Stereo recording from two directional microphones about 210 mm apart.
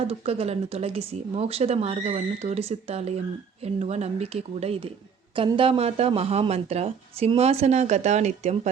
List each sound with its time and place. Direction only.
0.1 s speech: 30° right (ahead or behind)